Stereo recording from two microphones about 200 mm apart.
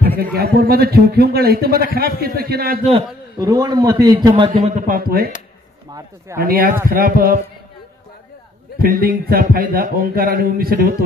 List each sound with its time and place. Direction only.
0.2 s a man's voice: 50° right (ahead or behind)
2.8 s a man's voice: 30° right (ahead or behind)
3.3 s a man's voice: 20° right (ahead or behind)
4.8 s a man's voice: 50° right (ahead or behind)
5.9 s speech: 15° right (ahead or behind)
6.4 s a man's voice: 45° right (ahead or behind)
8.7 s a man's voice: 45° right (ahead or behind)